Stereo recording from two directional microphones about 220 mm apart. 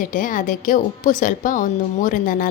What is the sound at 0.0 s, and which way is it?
A woman's voice, 35° left (ahead or behind).